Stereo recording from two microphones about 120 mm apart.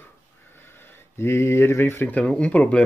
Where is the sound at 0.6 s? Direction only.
20° left (ahead or behind).